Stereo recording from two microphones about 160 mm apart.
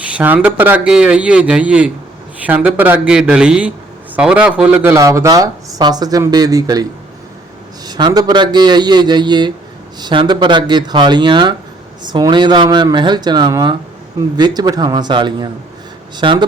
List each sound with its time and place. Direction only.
0.1 s speech: 10° right (ahead or behind)
7.9 s speech: 25° right (ahead or behind)